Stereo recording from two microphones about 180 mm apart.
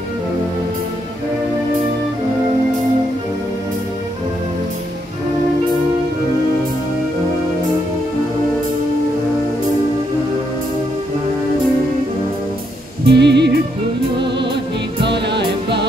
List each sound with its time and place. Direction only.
13.0 s music: 70° right (ahead or behind)